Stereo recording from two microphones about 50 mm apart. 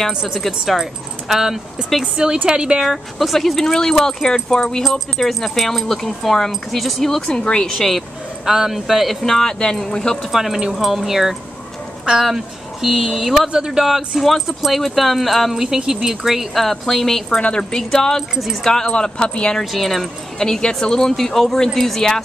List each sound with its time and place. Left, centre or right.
0.3 s speech: centre
7.7 s speech: centre
10.3 s speech: centre
15.5 s speech: centre
16.6 s speech: centre
17.4 s speech: centre
18.3 s speech: centre
18.6 s speech: centre
19.6 s speech: centre